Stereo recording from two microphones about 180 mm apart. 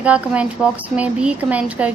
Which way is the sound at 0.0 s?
5° right (ahead or behind).